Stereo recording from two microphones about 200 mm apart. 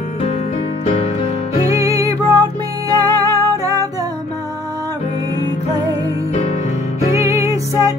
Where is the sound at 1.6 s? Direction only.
15° right (ahead or behind).